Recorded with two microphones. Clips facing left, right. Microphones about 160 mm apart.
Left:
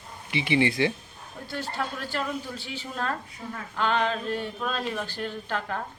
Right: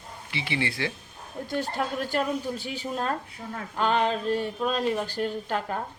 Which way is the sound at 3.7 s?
35° right (ahead or behind).